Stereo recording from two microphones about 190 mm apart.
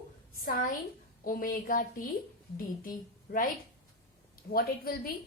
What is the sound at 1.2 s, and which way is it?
Speech, 50° left (ahead or behind).